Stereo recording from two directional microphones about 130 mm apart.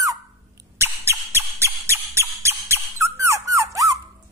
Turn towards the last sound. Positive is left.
turn(degrees=-25)  # may be behind; listen again after turning